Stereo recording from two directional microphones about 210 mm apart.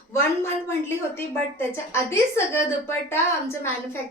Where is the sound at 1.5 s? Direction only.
10° left (ahead or behind).